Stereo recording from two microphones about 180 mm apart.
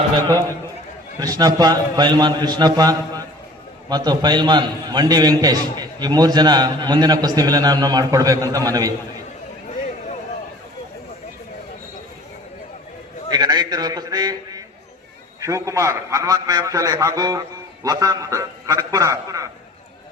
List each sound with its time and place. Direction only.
1.2 s a man's voice: 20° right (ahead or behind)
13.3 s a man's voice: 25° right (ahead or behind)